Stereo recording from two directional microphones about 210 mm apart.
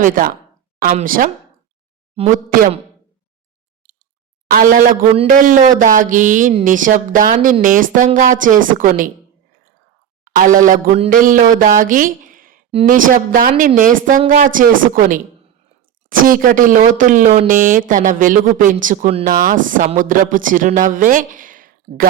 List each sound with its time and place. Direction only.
0.0 s speech: 40° right (ahead or behind)
4.4 s speech: 40° right (ahead or behind)
10.2 s speech: 40° right (ahead or behind)